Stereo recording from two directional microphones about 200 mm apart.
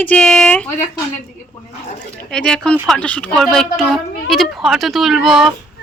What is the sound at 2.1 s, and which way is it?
A woman's voice, 5° left (ahead or behind).